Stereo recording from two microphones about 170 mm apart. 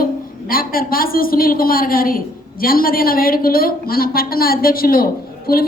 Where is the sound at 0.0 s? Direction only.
55° left (ahead or behind).